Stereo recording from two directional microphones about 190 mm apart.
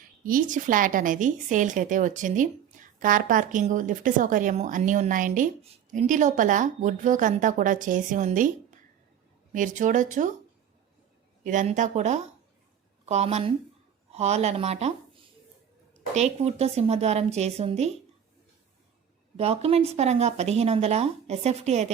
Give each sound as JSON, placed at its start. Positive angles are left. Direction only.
{"t": 0.2, "sound": "a woman's voice", "side_deg": -45}
{"t": 11.4, "sound": "speech", "side_deg": -40}
{"t": 19.4, "sound": "speech", "side_deg": -30}